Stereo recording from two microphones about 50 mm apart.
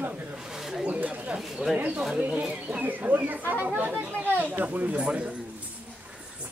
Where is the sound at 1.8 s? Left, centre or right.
Right.